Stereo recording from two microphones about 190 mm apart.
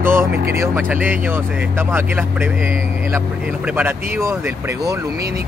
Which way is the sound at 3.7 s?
10° right (ahead or behind).